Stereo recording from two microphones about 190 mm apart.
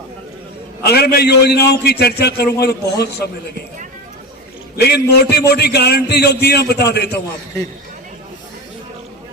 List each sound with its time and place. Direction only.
0.9 s a man's voice: 55° left (ahead or behind)
4.9 s a man's voice: 55° left (ahead or behind)